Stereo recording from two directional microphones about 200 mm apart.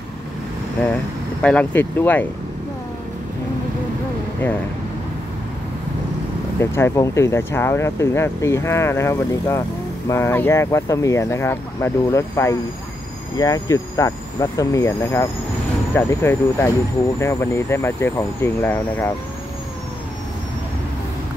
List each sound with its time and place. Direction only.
1.4 s speech: 5° left (ahead or behind)
6.6 s speech: 15° left (ahead or behind)